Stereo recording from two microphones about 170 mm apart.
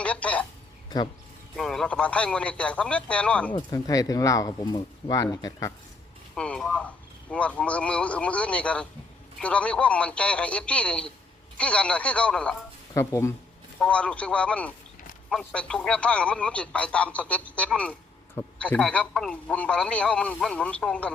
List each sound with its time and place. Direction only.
0.0 s a sound: 5° left (ahead or behind)
1.5 s speech: centre (ahead or behind)
3.5 s speech: 20° left (ahead or behind)
6.3 s speech: 5° left (ahead or behind)
12.9 s speech: 20° left (ahead or behind)